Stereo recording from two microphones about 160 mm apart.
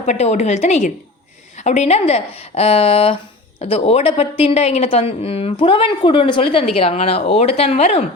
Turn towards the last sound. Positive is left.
turn(degrees=40)  # may be behind; listen again after turning